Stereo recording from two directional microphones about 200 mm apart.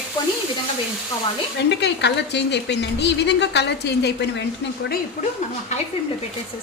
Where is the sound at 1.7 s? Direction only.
60° left (ahead or behind).